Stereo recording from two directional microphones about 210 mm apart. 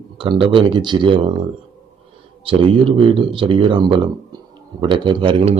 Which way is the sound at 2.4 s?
25° right (ahead or behind).